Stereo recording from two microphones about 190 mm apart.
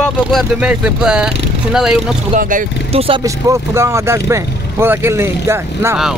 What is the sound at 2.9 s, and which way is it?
Speech, 30° right (ahead or behind).